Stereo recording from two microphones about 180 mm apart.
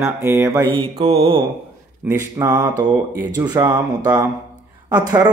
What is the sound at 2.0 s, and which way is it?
Speech, 15° right (ahead or behind).